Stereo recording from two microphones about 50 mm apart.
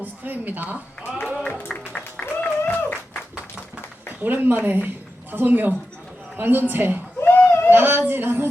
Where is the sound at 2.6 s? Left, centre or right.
Left.